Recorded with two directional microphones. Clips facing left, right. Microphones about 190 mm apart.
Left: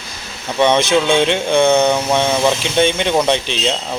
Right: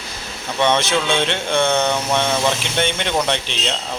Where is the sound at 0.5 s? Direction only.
15° left (ahead or behind).